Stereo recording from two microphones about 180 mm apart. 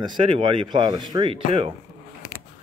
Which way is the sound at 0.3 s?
25° right (ahead or behind).